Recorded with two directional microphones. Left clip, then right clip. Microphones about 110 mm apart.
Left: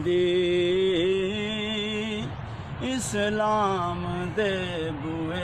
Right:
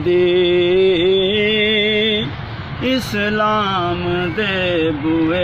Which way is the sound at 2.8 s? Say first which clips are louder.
Right 9 dB; 60° left (ahead or behind).